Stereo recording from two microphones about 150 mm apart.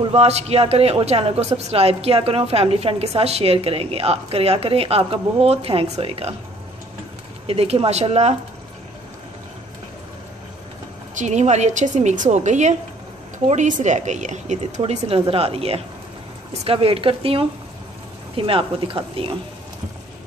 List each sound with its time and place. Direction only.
0.1 s a woman's voice: 45° right (ahead or behind)
7.4 s a woman's voice: 40° right (ahead or behind)
11.1 s a woman's voice: 50° right (ahead or behind)
14.8 s a woman's voice: 40° right (ahead or behind)